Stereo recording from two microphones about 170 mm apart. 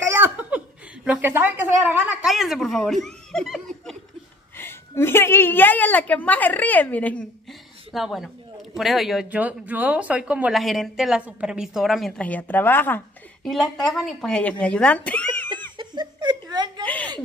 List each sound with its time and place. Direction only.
0.1 s laughter: 10° right (ahead or behind)
1.0 s speech: 10° right (ahead or behind)
4.6 s a woman's voice: 15° left (ahead or behind)
13.5 s speech: centre (ahead or behind)
15.8 s a sound: 25° right (ahead or behind)
16.8 s a sound: 10° left (ahead or behind)